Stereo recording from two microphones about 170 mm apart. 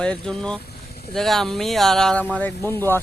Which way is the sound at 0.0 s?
5° left (ahead or behind).